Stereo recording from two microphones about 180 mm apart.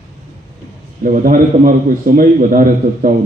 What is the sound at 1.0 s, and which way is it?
A man's voice, 50° right (ahead or behind).